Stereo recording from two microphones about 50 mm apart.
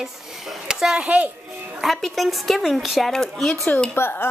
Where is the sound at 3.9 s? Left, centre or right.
Left.